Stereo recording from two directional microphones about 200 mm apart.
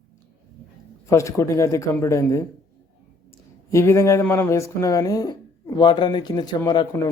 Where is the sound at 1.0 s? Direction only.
15° left (ahead or behind).